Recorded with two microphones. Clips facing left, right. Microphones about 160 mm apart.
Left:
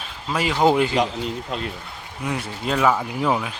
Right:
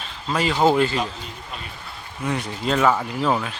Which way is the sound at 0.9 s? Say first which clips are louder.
Left 5 dB; 80° left.